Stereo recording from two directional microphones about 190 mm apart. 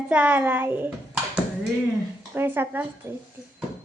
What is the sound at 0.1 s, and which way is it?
Speech, 10° right (ahead or behind).